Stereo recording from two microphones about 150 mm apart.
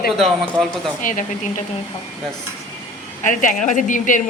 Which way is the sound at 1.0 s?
60° left (ahead or behind).